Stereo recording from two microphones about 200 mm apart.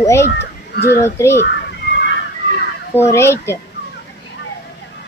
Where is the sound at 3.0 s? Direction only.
15° left (ahead or behind).